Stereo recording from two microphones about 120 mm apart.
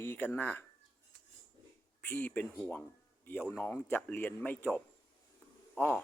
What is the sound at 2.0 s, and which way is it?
Speech, 10° left (ahead or behind).